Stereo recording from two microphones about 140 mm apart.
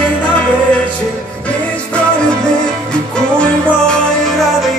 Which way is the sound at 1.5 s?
5° left (ahead or behind).